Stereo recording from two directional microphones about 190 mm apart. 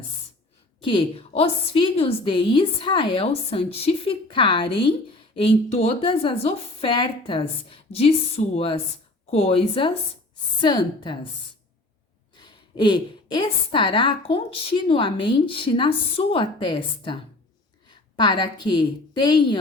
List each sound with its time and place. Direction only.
0.8 s a woman's voice: 25° left (ahead or behind)
8.4 s a woman's voice: 40° left (ahead or behind); by 11.3 s 25° left (ahead or behind)
12.4 s a woman's voice: 25° left (ahead or behind)